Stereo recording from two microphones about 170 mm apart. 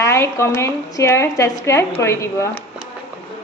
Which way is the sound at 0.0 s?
15° left (ahead or behind).